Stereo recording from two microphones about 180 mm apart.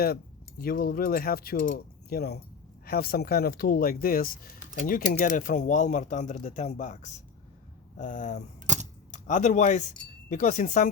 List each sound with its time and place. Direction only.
0.6 s speech: 55° left (ahead or behind)
8.6 s typewriter: 45° right (ahead or behind)
9.1 s speech: 40° left (ahead or behind)